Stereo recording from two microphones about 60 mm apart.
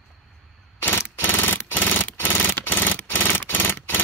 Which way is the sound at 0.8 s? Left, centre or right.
Left.